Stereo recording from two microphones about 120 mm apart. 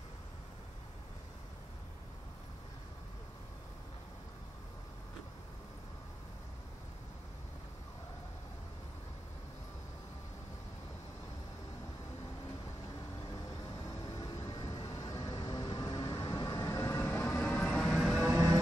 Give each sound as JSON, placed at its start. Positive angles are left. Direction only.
{"t": 13.8, "sound": "vehicle", "side_deg": 30}
{"t": 16.6, "sound": "train", "side_deg": 25}
{"t": 17.7, "sound": "vehicle", "side_deg": -5}
{"t": 18.2, "sound": "music", "side_deg": -30}